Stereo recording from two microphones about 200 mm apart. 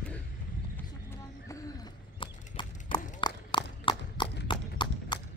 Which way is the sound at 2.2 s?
25° left (ahead or behind).